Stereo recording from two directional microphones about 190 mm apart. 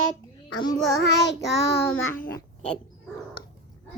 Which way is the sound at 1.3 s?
60° left (ahead or behind).